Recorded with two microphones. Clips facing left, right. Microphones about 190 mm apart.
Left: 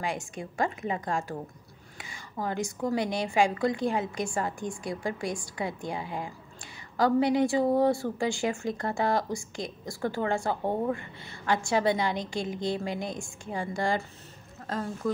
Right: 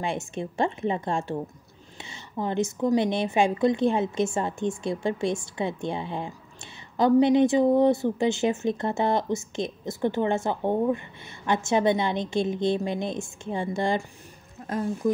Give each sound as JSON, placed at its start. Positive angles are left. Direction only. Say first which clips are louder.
{"t": 0.0, "sound": "speech", "louder": "right 4 dB", "side_deg": -25}